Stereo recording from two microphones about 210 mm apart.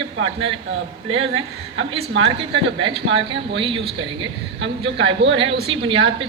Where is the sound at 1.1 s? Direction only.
25° right (ahead or behind).